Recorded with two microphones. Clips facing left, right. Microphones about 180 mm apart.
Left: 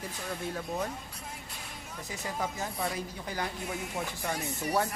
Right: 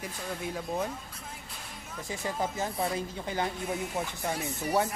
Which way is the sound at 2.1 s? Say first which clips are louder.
Right 3 dB; 25° right (ahead or behind).